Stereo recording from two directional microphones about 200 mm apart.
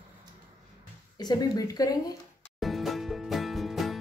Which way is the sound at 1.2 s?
20° left (ahead or behind).